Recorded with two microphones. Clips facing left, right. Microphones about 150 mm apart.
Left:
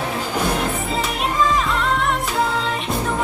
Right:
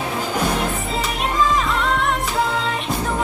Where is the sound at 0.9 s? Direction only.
Centre (ahead or behind).